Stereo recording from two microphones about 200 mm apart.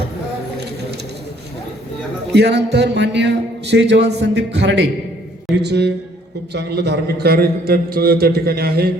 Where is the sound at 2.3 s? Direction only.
55° right (ahead or behind).